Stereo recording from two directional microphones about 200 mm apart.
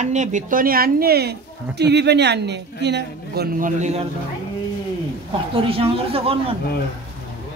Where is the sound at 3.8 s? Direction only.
35° right (ahead or behind).